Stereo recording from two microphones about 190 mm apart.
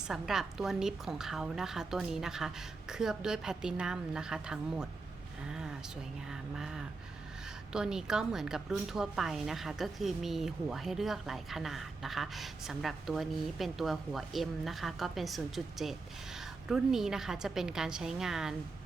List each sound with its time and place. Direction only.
0.1 s a woman's voice: centre (ahead or behind)
5.5 s a sound: 5° right (ahead or behind)
7.7 s a woman's voice: 5° right (ahead or behind)